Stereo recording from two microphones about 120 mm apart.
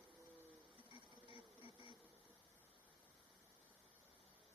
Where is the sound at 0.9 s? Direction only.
45° right (ahead or behind).